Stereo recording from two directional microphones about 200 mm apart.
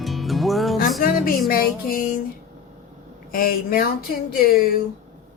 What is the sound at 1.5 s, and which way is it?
Music, 50° left (ahead or behind).